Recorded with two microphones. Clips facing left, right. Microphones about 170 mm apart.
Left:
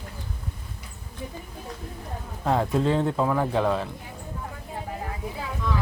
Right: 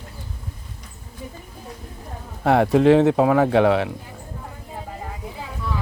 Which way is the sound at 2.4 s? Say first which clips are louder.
Right 7 dB; 75° right (ahead or behind).